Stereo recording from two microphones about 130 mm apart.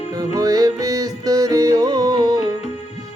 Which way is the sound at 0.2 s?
30° right (ahead or behind).